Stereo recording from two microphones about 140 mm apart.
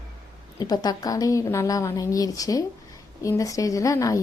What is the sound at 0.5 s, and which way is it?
A woman's voice, 30° left (ahead or behind).